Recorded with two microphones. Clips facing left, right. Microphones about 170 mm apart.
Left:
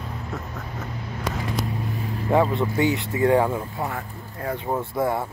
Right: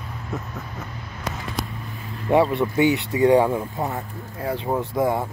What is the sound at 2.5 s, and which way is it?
Speech, 15° right (ahead or behind).